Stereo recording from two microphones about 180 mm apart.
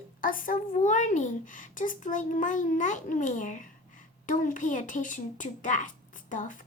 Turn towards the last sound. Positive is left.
turn(degrees=45)  # may be behind; listen again after turning